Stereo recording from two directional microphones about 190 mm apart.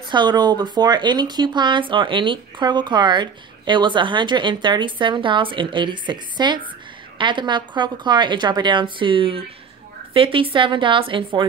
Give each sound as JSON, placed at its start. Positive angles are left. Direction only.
{"t": 0.1, "sound": "speech", "side_deg": -25}